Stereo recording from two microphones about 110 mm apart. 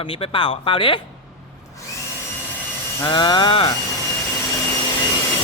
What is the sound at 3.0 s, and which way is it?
Speech, 45° left (ahead or behind).